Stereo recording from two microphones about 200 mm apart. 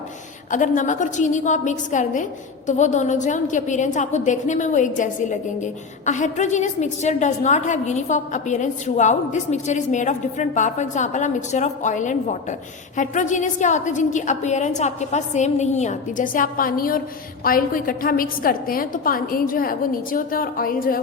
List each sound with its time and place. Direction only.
0.5 s a woman's voice: 40° left (ahead or behind)